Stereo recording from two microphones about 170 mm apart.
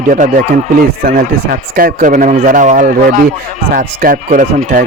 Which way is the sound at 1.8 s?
55° right (ahead or behind).